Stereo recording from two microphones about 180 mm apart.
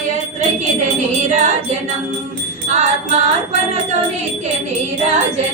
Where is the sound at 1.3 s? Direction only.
40° right (ahead or behind).